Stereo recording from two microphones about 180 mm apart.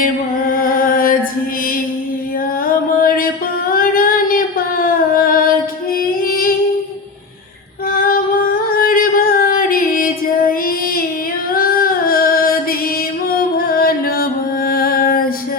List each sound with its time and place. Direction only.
0.5 s music: 50° left (ahead or behind)
2.6 s music: 50° left (ahead or behind)
3.7 s singing: 50° left (ahead or behind)
6.1 s female singing: 50° left (ahead or behind)
7.9 s female singing: 50° left (ahead or behind)
8.8 s music: 50° left (ahead or behind)
11.5 s female singing: 55° left (ahead or behind)
13.3 s music: 55° left (ahead or behind)